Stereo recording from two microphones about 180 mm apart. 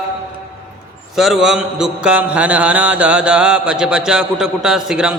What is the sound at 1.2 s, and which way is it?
Mantra, centre (ahead or behind).